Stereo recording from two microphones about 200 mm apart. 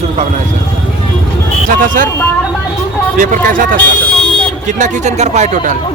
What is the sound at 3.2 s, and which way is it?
Speech, 40° right (ahead or behind).